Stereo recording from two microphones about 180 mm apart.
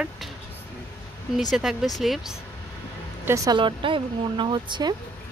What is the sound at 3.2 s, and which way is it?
Speech, 20° right (ahead or behind).